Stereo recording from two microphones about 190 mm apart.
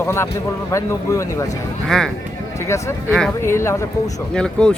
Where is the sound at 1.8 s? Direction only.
5° left (ahead or behind).